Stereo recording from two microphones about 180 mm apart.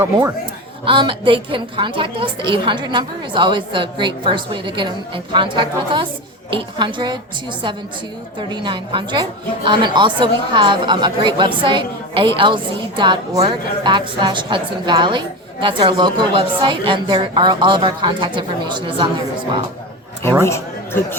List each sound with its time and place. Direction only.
0.9 s speech: 25° right (ahead or behind)
8.4 s speech: 25° right (ahead or behind)
20.4 s speech: 15° left (ahead or behind)